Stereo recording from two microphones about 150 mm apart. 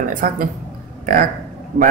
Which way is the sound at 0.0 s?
65° right (ahead or behind).